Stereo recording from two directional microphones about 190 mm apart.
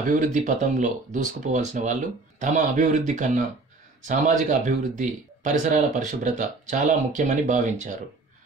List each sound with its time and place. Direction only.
0.0 s speech: 45° right (ahead or behind)